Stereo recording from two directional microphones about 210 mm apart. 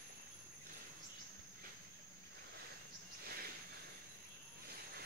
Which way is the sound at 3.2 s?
45° right (ahead or behind).